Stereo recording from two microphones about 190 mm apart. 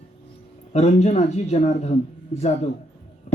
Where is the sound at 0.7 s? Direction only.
35° left (ahead or behind).